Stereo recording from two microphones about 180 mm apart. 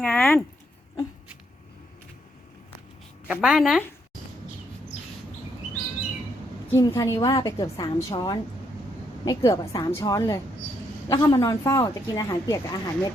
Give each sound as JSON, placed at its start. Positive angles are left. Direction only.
{"t": 0.0, "sound": "speech", "side_deg": 5}
{"t": 3.2, "sound": "a woman's voice", "side_deg": -5}
{"t": 6.7, "sound": "a woman's voice", "side_deg": 20}